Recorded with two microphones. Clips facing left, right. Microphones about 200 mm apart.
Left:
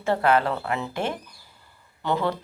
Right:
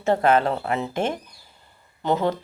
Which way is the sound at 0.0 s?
20° right (ahead or behind).